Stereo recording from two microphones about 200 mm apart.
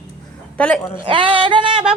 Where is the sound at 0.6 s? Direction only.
5° left (ahead or behind).